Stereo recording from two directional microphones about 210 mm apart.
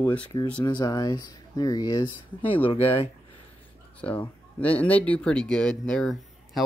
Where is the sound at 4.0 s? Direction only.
5° left (ahead or behind).